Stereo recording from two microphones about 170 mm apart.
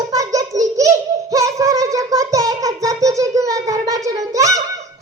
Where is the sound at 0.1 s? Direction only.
20° right (ahead or behind).